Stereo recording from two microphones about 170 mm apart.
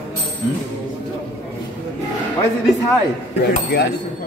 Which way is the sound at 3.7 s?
80° left.